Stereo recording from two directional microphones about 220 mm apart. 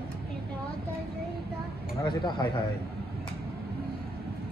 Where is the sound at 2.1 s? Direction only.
20° left (ahead or behind).